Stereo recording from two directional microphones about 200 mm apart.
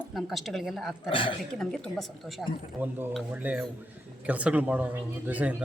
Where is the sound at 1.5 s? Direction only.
5° left (ahead or behind).